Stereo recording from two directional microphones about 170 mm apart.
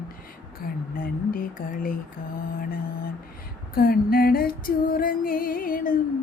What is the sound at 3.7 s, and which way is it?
Mantra, 60° left (ahead or behind).